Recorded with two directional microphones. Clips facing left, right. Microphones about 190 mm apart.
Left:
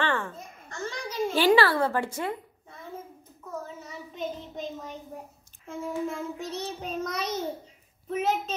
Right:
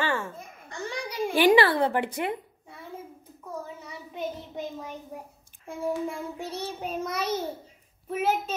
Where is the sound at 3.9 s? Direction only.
10° right (ahead or behind).